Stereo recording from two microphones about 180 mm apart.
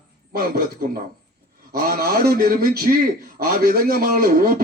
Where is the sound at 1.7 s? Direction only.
55° right (ahead or behind).